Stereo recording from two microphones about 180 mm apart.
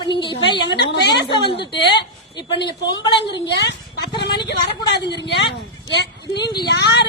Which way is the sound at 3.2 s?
75° left (ahead or behind).